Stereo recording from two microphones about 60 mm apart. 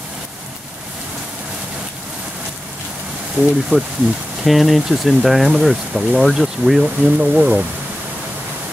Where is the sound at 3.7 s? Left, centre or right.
Right.